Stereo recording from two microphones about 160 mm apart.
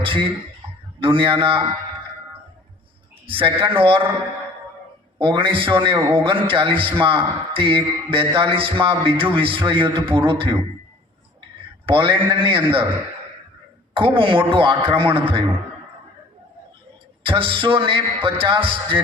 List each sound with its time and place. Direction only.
0.0 s a man's voice: 35° right (ahead or behind)
3.2 s a man's voice: 35° right (ahead or behind)
5.2 s a man's voice: 30° right (ahead or behind)
11.9 s a man's voice: 30° right (ahead or behind)
13.9 s a man's voice: 35° right (ahead or behind)
17.2 s a man's voice: 35° right (ahead or behind)